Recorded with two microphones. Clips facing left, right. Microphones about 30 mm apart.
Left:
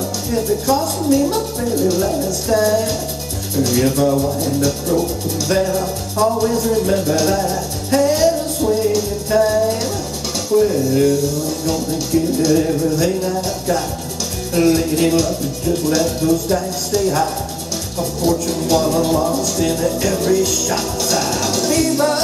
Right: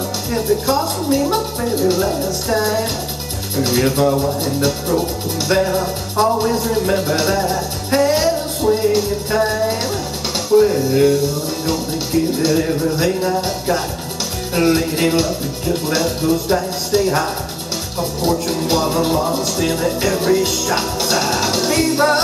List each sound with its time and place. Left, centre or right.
0.5 s speech: right
1.8 s speech: right
5.5 s speech: right
7.2 s music: right
8.6 s music: centre
9.3 s speech: right
12.5 s speech: right
14.5 s speech: right
19.3 s speech: right
19.6 s music: right